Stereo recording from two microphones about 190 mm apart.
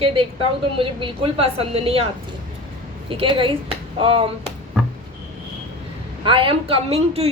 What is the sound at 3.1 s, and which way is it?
A woman's voice, 25° right (ahead or behind).